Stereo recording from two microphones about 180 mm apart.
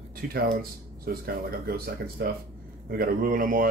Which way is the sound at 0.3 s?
55° right (ahead or behind).